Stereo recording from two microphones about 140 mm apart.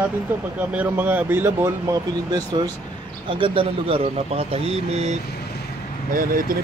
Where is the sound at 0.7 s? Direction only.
15° right (ahead or behind).